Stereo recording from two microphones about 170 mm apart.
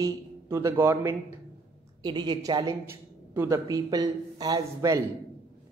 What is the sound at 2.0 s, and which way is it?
A man's voice, 25° right (ahead or behind).